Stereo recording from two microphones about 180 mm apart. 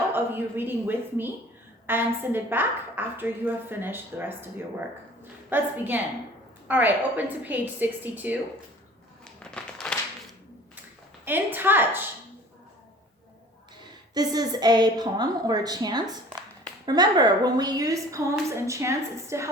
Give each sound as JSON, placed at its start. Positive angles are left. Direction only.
{"t": 0.1, "sound": "a woman's voice", "side_deg": -10}
{"t": 5.5, "sound": "a woman's voice", "side_deg": -10}
{"t": 9.2, "sound": "a sound", "side_deg": 5}
{"t": 11.3, "sound": "a woman's voice", "side_deg": -10}
{"t": 13.8, "sound": "a woman's voice", "side_deg": -20}